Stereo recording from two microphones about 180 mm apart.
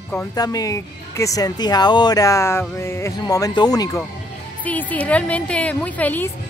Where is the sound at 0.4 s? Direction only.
20° left (ahead or behind).